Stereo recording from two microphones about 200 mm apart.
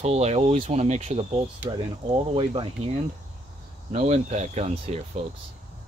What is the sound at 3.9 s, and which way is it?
Speech, 30° right (ahead or behind).